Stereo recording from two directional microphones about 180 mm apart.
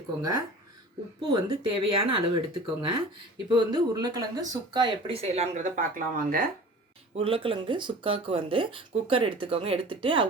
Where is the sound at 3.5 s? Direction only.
25° right (ahead or behind); by 6.5 s 50° right (ahead or behind).